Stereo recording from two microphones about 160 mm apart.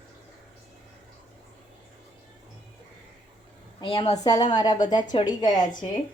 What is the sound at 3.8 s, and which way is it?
A woman's voice, 30° left (ahead or behind).